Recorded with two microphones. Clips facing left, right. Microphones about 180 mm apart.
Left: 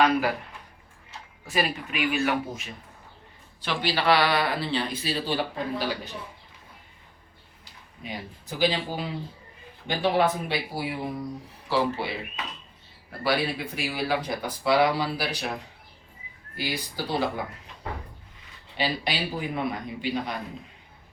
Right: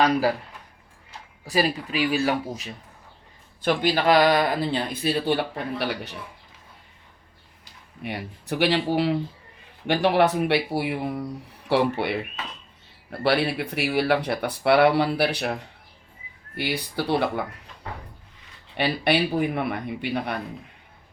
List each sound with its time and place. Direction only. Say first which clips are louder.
0.0 s speech: right 2 dB; 35° right (ahead or behind)
1.5 s speech: right 4 dB; 35° right (ahead or behind)
3.6 s speech: right 5 dB; 50° right (ahead or behind); by 6.0 s 65° right (ahead or behind)
8.0 s speech: right 5 dB; 70° right (ahead or behind)
16.6 s speech: right 4 dB; 65° right (ahead or behind)
18.8 s speech: right 6 dB; 60° right (ahead or behind)